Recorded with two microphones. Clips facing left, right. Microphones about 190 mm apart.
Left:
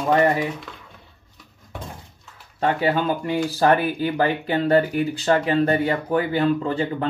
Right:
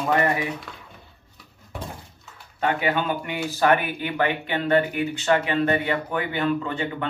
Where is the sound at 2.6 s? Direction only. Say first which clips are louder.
Left 3 dB; 35° left (ahead or behind).